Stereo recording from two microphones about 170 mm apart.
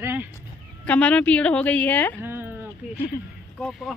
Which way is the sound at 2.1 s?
10° right (ahead or behind).